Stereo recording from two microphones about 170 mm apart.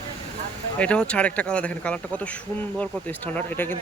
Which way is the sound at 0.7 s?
5° left (ahead or behind).